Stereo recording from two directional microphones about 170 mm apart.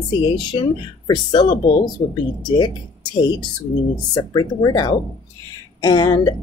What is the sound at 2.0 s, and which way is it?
Speech, 40° left (ahead or behind).